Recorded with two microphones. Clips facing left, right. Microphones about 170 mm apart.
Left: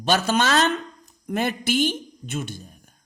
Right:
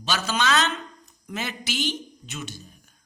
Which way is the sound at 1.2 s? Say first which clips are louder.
Left 8 dB; 55° left (ahead or behind).